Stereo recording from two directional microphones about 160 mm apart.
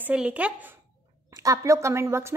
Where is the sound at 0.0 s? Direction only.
10° right (ahead or behind).